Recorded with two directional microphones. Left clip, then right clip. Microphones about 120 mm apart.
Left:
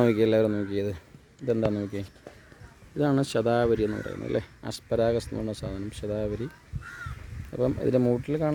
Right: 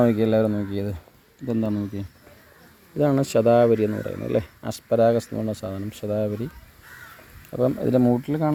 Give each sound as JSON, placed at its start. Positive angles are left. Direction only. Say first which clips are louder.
{"t": 0.0, "sound": "speech", "louder": "right 2 dB", "side_deg": 25}
{"t": 1.7, "sound": "speech", "louder": "right 2 dB", "side_deg": 60}
{"t": 3.0, "sound": "speech", "louder": "right 5 dB", "side_deg": 0}
{"t": 7.5, "sound": "speech", "louder": "right 4 dB", "side_deg": 5}